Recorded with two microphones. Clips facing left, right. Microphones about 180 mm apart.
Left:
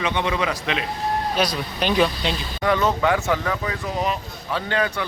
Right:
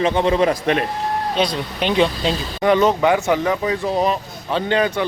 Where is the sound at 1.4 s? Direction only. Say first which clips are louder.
Right 3 dB; 25° right (ahead or behind).